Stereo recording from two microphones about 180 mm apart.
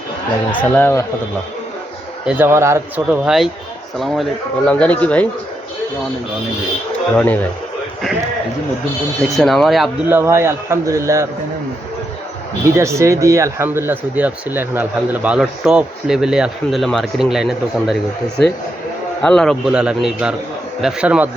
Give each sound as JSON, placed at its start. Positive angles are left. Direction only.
{"t": 0.6, "sound": "speech", "side_deg": 10}
{"t": 2.2, "sound": "speech", "side_deg": -10}
{"t": 7.2, "sound": "speech", "side_deg": 10}
{"t": 9.2, "sound": "a man's voice", "side_deg": 0}
{"t": 10.1, "sound": "speech", "side_deg": -15}
{"t": 12.7, "sound": "speech", "side_deg": -15}
{"t": 19.2, "sound": "a man's voice", "side_deg": 5}